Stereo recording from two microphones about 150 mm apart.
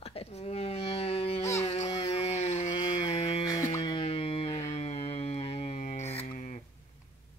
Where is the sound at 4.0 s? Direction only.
40° left (ahead or behind).